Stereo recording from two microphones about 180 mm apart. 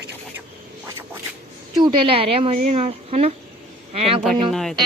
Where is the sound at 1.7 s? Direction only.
25° right (ahead or behind).